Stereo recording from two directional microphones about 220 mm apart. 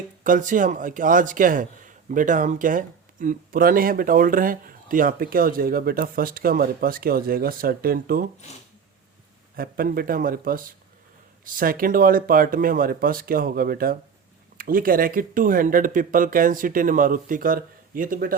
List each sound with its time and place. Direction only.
0.3 s a man's voice: 35° right (ahead or behind)
9.6 s a man's voice: 40° right (ahead or behind)